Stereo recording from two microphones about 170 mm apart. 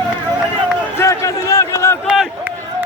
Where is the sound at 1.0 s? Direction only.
15° left (ahead or behind).